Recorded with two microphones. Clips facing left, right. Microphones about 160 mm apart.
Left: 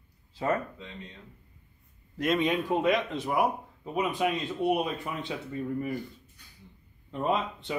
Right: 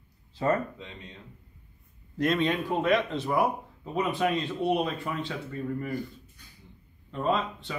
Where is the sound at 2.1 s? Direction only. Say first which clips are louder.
Right 1 dB; 10° left (ahead or behind).